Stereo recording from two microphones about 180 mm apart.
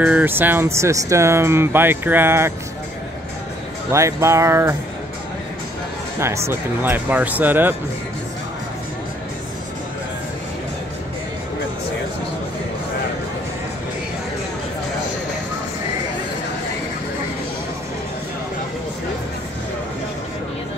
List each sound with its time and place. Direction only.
0.0 s speech: 10° right (ahead or behind)
3.9 s speech: 15° right (ahead or behind)
6.1 s speech: 15° right (ahead or behind)